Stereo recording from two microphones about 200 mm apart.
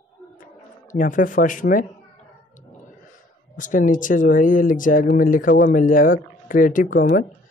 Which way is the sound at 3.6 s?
40° left (ahead or behind).